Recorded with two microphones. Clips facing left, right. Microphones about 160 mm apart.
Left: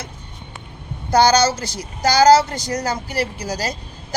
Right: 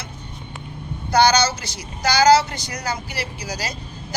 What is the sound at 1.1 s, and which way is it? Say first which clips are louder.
A woman's voice: left 2 dB; 45° left (ahead or behind).